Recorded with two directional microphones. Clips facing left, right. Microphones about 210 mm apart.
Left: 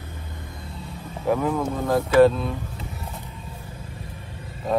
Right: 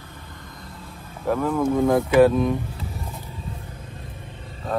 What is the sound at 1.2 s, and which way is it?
Speech, 5° left (ahead or behind).